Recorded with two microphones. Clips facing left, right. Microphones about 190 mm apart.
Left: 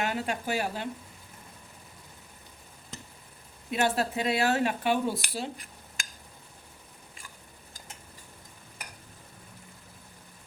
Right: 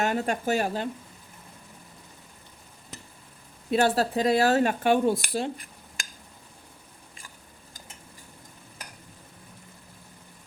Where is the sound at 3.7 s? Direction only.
35° right (ahead or behind); by 5.5 s 50° right (ahead or behind).